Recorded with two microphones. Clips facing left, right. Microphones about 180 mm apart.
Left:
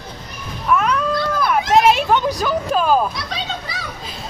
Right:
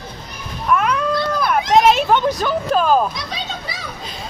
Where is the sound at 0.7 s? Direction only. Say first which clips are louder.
Even; centre (ahead or behind).